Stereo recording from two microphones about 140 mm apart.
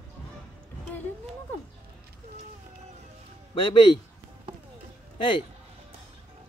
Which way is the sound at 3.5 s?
35° left (ahead or behind).